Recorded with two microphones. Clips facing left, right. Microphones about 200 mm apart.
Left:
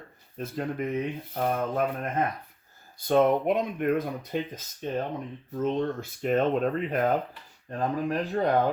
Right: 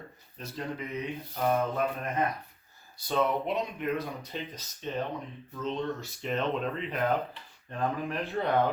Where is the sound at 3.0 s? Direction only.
50° left (ahead or behind).